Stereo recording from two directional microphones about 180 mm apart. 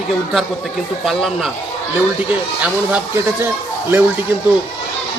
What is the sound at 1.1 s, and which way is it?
Speech, centre (ahead or behind).